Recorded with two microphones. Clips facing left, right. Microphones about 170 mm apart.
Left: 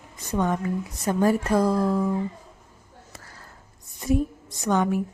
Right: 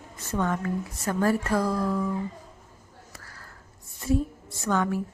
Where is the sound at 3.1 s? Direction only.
25° left (ahead or behind).